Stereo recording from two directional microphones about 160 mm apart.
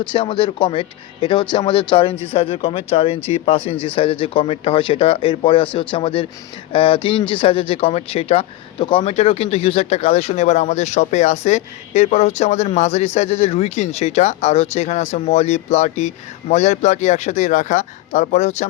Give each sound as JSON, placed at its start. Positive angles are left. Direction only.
{"t": 0.0, "sound": "speech", "side_deg": 30}